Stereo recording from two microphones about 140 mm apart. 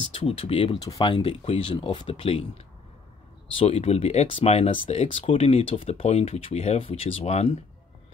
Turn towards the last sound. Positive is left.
turn(degrees=50)  # may be behind; listen again after turning